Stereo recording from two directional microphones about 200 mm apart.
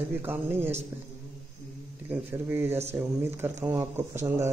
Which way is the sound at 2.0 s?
10° right (ahead or behind).